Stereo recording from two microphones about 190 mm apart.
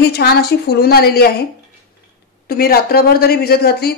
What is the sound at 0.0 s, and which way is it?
A woman's voice, 55° left (ahead or behind).